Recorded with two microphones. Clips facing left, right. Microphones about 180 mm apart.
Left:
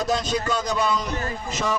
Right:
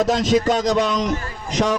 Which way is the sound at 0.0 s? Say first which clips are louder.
Right 7 dB; 90° right.